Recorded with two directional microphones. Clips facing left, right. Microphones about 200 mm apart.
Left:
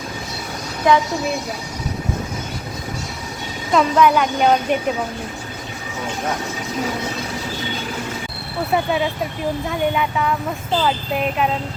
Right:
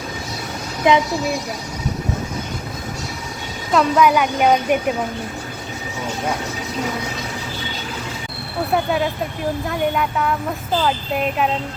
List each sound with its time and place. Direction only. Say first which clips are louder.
0.9 s a woman's voice: even; 20° right (ahead or behind)
3.7 s a woman's voice: even; 5° right (ahead or behind)
8.7 s a woman's voice: even; centre (ahead or behind)